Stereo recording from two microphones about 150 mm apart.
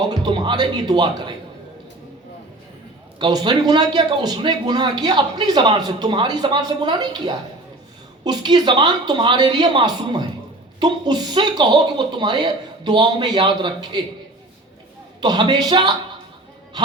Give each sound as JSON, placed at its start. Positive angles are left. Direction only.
{"t": 0.1, "sound": "a man's voice", "side_deg": -30}
{"t": 3.2, "sound": "a man's voice", "side_deg": -30}
{"t": 15.2, "sound": "a man's voice", "side_deg": -30}